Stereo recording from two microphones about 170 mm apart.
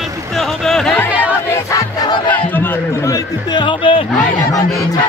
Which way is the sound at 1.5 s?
20° left (ahead or behind).